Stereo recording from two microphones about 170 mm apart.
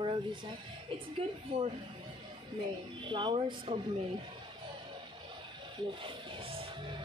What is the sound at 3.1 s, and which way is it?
Speech, 30° right (ahead or behind).